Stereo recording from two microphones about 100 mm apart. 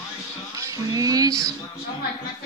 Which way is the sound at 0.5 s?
35° right (ahead or behind).